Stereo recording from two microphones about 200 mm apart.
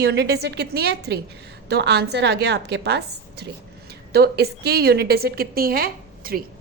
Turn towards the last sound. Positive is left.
turn(degrees=-50)  # may be behind; listen again after turning